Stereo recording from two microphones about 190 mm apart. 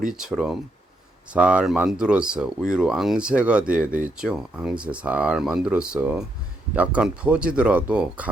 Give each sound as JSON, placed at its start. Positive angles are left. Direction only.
{"t": 0.1, "sound": "speech", "side_deg": -5}